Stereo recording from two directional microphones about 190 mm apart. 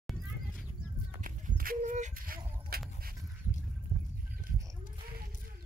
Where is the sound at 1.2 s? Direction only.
45° right (ahead or behind).